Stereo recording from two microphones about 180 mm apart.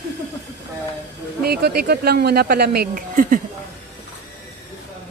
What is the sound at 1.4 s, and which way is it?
A man's voice, 60° right (ahead or behind).